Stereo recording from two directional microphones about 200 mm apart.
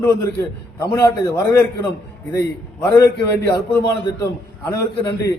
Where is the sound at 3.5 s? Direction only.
15° left (ahead or behind).